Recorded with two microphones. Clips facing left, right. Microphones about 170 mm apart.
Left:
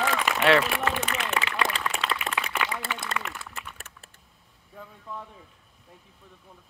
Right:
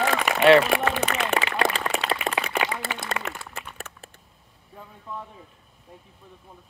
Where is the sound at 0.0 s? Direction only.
60° right (ahead or behind).